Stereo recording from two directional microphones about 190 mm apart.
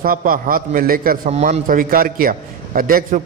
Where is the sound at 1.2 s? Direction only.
35° right (ahead or behind).